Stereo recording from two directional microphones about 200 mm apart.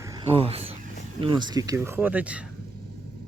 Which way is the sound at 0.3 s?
30° right (ahead or behind).